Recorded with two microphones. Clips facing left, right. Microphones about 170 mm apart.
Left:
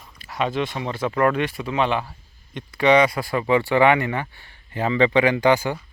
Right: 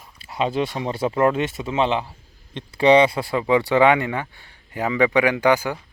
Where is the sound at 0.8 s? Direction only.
30° right (ahead or behind); by 5.8 s 10° right (ahead or behind).